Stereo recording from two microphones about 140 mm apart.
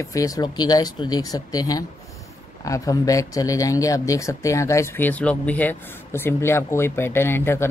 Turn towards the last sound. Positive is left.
turn(degrees=15)  # may be behind; listen again after turning